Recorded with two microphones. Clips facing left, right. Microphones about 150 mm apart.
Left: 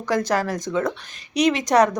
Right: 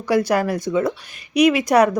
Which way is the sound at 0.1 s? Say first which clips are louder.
Right 4 dB; 10° right (ahead or behind).